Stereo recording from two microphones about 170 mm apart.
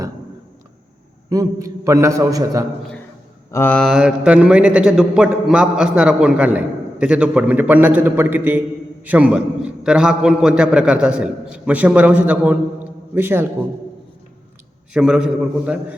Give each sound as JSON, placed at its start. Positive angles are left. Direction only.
{"t": 1.3, "sound": "a man's voice", "side_deg": -20}
{"t": 3.5, "sound": "a man's voice", "side_deg": 10}
{"t": 14.9, "sound": "a man's voice", "side_deg": -5}